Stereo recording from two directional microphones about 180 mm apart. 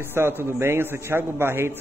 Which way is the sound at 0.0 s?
10° right (ahead or behind).